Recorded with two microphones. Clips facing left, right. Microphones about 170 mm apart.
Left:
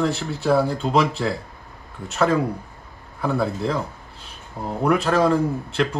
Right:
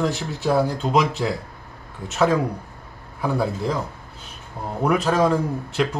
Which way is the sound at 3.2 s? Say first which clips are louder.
Left 1 dB; 5° right (ahead or behind).